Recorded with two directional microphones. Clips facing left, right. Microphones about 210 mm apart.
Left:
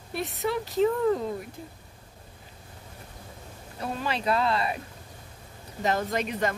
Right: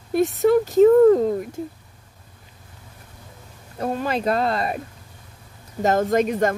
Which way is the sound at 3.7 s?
45° right (ahead or behind).